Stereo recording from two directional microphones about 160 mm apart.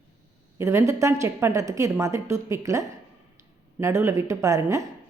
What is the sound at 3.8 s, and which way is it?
A woman's voice, 15° right (ahead or behind).